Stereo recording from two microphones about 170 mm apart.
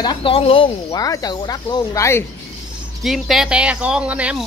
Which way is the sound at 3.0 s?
Centre (ahead or behind).